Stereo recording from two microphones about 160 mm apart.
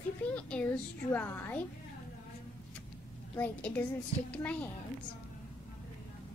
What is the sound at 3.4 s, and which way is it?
A child's voice, 10° left (ahead or behind).